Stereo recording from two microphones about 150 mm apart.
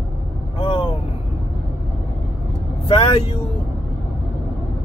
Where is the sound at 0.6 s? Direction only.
35° left (ahead or behind).